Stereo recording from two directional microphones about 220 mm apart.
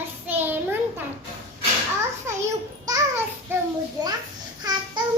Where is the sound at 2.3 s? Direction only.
10° right (ahead or behind).